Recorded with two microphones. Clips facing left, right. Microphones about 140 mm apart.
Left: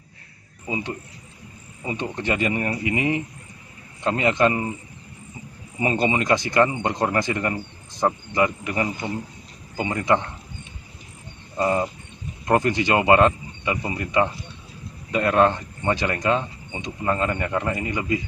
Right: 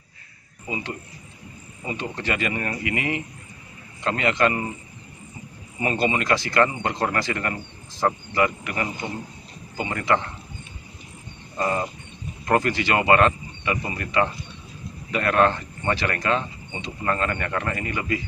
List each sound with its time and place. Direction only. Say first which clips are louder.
1.9 s speech: left 2 dB; 20° left (ahead or behind)
5.8 s speech: left 2 dB; 20° left (ahead or behind)
11.5 s wild animals: left 3 dB; 15° left (ahead or behind)
12.4 s speech: left 2 dB; 20° left (ahead or behind)